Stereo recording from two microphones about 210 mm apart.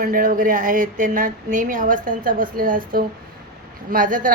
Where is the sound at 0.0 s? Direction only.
40° right (ahead or behind).